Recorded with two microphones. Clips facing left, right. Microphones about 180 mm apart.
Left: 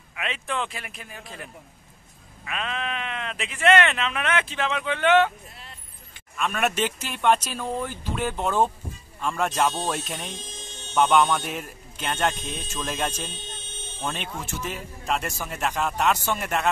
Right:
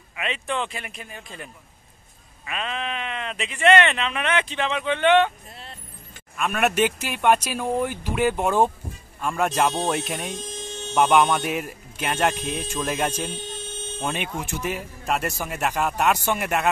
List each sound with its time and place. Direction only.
0.1 s speech: centre (ahead or behind)
6.3 s speech: 5° right (ahead or behind)
6.7 s speech: 55° right (ahead or behind)
7.1 s speech: 10° right (ahead or behind)